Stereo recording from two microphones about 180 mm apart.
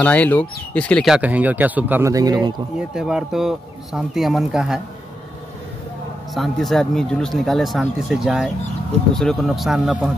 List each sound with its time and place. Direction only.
0.0 s speech: 10° left (ahead or behind); by 2.5 s 20° right (ahead or behind)
2.9 s speech: 5° right (ahead or behind)
6.3 s speech: centre (ahead or behind)